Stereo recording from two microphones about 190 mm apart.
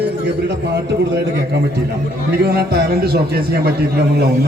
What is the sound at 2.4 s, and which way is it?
A man's voice, 55° right (ahead or behind).